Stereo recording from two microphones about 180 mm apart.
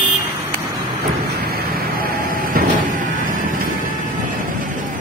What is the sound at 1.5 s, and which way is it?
Vehicle, 55° right (ahead or behind).